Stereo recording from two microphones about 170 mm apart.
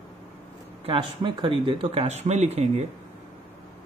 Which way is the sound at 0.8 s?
30° right (ahead or behind).